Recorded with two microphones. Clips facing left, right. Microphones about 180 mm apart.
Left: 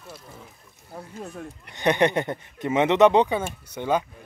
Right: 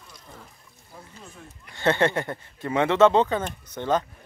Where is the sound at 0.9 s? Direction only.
60° left (ahead or behind).